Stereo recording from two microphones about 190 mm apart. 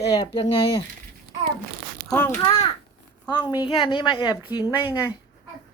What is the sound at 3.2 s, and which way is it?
A woman's voice, 20° left (ahead or behind).